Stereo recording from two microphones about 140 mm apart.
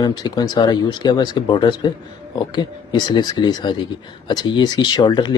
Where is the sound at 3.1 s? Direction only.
30° left (ahead or behind).